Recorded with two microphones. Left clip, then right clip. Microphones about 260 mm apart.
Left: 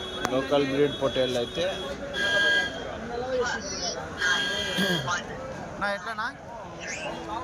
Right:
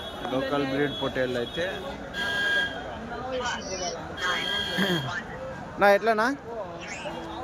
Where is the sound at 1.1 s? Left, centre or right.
Centre.